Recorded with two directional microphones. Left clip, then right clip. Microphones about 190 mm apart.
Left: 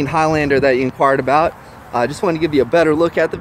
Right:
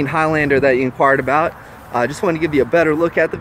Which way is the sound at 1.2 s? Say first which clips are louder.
Left 2 dB; 20° left (ahead or behind).